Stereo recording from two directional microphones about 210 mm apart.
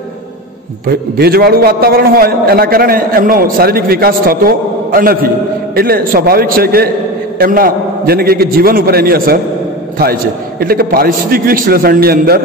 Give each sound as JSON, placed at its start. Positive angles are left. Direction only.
{"t": 0.8, "sound": "a man's voice", "side_deg": -45}